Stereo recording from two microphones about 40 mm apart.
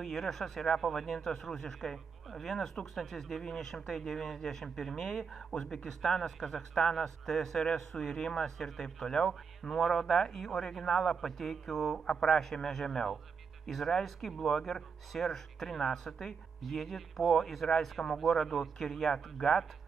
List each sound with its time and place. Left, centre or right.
0.0 s speech: centre
12.1 s speech: centre